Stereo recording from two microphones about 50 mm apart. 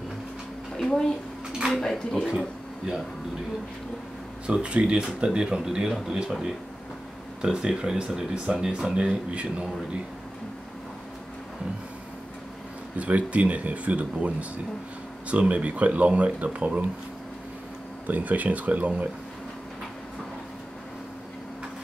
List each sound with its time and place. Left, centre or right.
0.7 s a sound: centre
1.7 s speech: centre
4.5 s speech: right
7.4 s speech: centre
12.9 s speech: right
18.0 s speech: right